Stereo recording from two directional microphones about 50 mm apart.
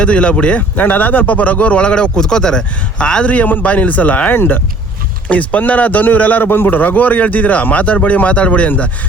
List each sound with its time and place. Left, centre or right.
0.0 s a man's voice: left
0.8 s a man's voice: left